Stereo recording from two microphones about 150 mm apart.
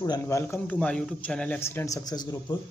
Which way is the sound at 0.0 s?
25° left (ahead or behind).